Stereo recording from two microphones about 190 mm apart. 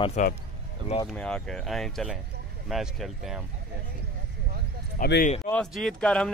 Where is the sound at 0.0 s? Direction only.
35° left (ahead or behind).